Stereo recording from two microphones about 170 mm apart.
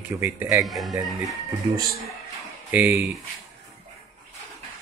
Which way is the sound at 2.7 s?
10° right (ahead or behind).